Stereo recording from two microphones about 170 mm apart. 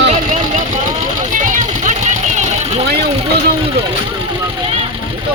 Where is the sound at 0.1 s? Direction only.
45° right (ahead or behind).